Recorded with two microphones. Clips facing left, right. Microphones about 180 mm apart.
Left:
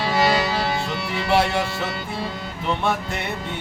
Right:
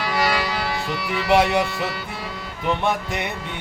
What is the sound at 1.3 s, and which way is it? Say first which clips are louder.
Music: right 3 dB; 20° right (ahead or behind).